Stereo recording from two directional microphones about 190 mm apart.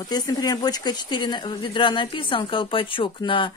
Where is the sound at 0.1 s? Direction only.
20° left (ahead or behind).